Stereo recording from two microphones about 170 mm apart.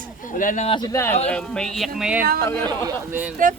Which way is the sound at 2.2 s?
60° right (ahead or behind).